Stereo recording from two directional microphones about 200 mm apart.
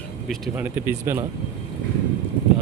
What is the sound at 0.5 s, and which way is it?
Speech, 10° right (ahead or behind).